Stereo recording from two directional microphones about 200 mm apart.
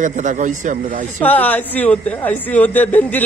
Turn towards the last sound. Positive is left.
turn(degrees=10)  # may be behind; listen again after turning